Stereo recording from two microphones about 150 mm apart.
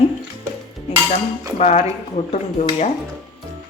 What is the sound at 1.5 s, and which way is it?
Dishes, 45° left (ahead or behind).